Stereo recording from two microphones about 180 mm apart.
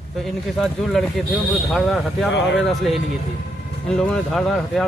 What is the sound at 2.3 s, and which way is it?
Speech, 75° left (ahead or behind).